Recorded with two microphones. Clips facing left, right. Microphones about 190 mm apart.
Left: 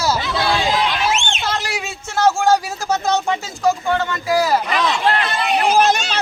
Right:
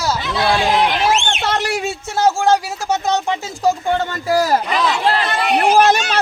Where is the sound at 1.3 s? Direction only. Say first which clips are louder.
Right 4 dB; 65° right (ahead or behind).